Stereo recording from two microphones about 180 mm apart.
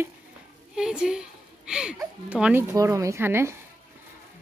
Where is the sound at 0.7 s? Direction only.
5° right (ahead or behind).